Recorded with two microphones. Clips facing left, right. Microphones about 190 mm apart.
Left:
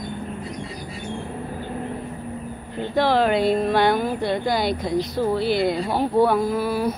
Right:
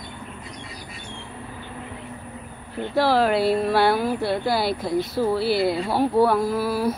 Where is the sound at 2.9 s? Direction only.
5° right (ahead or behind).